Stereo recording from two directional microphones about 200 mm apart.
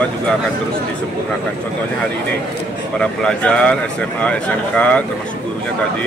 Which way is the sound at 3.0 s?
5° left (ahead or behind).